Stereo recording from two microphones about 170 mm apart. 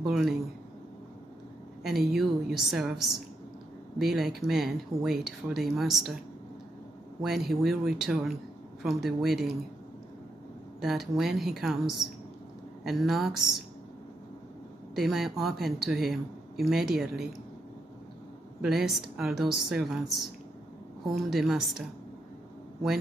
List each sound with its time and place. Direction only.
0.0 s speech: centre (ahead or behind)
2.0 s speech: centre (ahead or behind)
7.2 s speech: centre (ahead or behind)
10.8 s speech: centre (ahead or behind)
15.0 s speech: centre (ahead or behind)
18.6 s speech: centre (ahead or behind)